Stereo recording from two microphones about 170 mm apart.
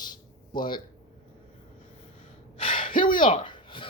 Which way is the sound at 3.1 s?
50° left (ahead or behind).